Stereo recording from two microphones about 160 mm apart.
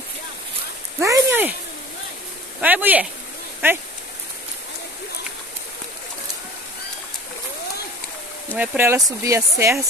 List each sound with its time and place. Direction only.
1.0 s speech: 15° right (ahead or behind)
2.6 s speech: 10° right (ahead or behind)
8.5 s speech: 15° right (ahead or behind)